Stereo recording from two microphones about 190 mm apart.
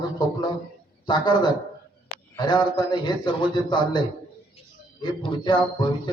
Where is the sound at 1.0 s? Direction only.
25° left (ahead or behind).